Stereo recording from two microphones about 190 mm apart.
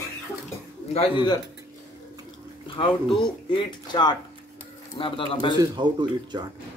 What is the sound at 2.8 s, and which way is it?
Speech, 25° left (ahead or behind).